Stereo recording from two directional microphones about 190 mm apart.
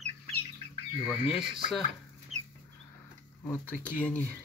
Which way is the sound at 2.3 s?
35° right (ahead or behind).